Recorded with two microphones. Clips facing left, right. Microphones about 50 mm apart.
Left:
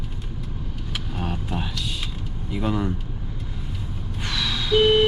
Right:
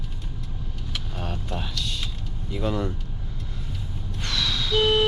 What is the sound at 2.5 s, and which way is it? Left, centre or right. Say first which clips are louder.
Speech: left 2 dB; centre.